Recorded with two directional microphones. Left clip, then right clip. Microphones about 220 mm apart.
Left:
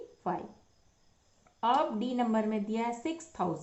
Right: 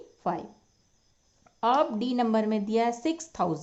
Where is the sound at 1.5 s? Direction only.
35° right (ahead or behind).